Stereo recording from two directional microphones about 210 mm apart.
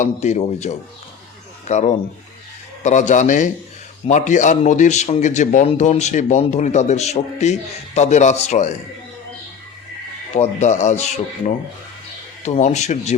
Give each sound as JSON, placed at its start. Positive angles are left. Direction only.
{"t": 0.0, "sound": "a man's voice", "side_deg": 35}
{"t": 10.3, "sound": "a man's voice", "side_deg": 35}